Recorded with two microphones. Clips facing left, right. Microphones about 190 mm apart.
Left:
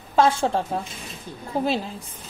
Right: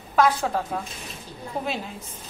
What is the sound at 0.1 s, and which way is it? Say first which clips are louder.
A woman's voice: left 2 dB; 25° left (ahead or behind).